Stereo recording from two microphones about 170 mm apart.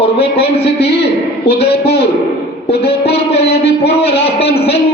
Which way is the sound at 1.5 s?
70° left (ahead or behind).